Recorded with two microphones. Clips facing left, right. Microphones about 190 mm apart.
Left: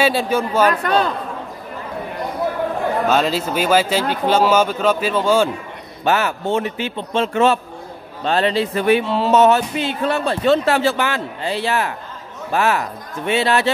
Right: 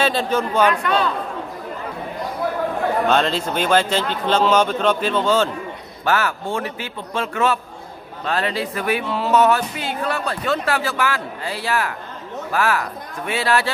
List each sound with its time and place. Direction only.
0.0 s a man's voice: 10° left (ahead or behind)
0.7 s speech: 45° left (ahead or behind)
3.1 s a man's voice: 5° left (ahead or behind)
6.0 s speech: 20° left (ahead or behind)